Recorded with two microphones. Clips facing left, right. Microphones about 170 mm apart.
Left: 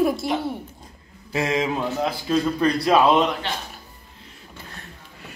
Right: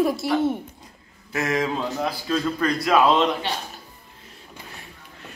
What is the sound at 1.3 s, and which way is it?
Speech, 25° left (ahead or behind).